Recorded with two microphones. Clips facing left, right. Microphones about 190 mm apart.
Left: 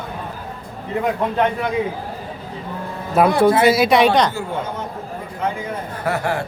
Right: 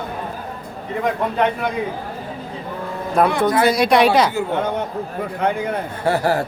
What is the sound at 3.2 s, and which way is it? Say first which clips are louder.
Speech: left 3 dB; 5° left (ahead or behind).